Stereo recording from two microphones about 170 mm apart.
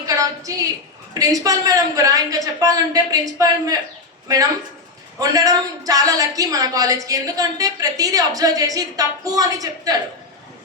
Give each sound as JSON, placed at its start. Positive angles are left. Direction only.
{"t": 0.0, "sound": "a sound", "side_deg": -20}
{"t": 1.2, "sound": "a woman's voice", "side_deg": -20}
{"t": 5.2, "sound": "a woman's voice", "side_deg": -20}